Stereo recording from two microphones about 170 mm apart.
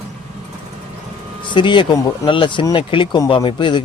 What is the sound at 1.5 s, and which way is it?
Speech, 30° left (ahead or behind).